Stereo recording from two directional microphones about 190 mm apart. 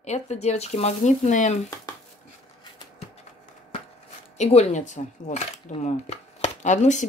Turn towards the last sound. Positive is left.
turn(degrees=40)  # may be behind; listen again after turning